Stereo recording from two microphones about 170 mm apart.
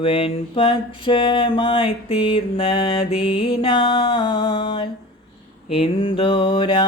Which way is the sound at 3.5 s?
30° left (ahead or behind).